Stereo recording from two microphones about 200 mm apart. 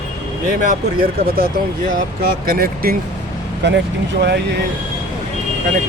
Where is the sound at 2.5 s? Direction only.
45° right (ahead or behind).